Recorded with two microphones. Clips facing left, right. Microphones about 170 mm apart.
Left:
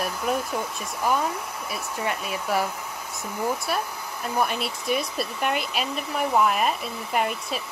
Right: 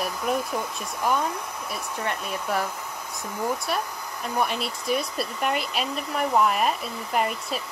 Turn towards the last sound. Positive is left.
turn(degrees=0)  # may be behind; listen again after turning